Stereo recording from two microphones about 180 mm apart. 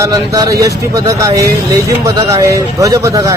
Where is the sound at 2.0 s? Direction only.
15° right (ahead or behind).